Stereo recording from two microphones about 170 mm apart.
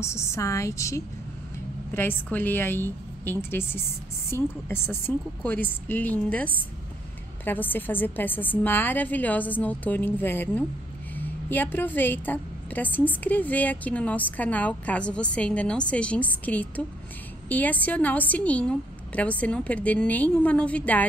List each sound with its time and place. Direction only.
0.0 s a woman's voice: 15° left (ahead or behind)